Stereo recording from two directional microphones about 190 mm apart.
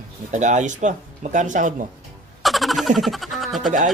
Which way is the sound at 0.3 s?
40° right (ahead or behind).